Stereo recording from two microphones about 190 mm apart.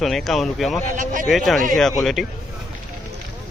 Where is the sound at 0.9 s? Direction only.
40° right (ahead or behind).